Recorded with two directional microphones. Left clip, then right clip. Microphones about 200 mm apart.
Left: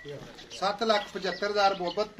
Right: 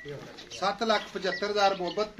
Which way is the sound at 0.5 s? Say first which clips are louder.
Left 1 dB; 10° left (ahead or behind).